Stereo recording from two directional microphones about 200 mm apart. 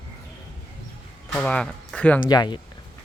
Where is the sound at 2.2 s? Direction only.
20° left (ahead or behind).